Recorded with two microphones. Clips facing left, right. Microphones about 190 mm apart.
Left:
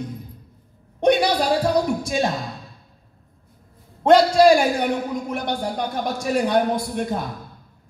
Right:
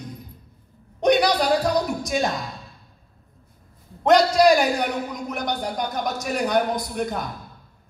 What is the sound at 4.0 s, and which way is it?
Speech, 30° left (ahead or behind).